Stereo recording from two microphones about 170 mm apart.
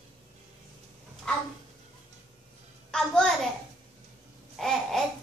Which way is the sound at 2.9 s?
5° left (ahead or behind).